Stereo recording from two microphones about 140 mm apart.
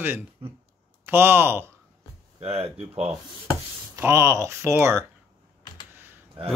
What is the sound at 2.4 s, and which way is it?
Speech, 45° right (ahead or behind).